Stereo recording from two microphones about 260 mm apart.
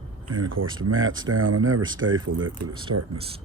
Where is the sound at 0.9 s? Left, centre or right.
Right.